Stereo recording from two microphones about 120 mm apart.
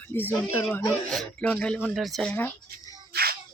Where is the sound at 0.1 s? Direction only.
15° left (ahead or behind).